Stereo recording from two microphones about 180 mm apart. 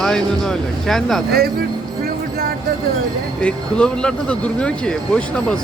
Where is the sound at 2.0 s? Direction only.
55° right (ahead or behind).